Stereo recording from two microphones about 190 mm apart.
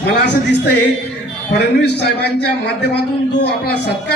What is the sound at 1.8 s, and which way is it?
A man's voice, 60° left (ahead or behind).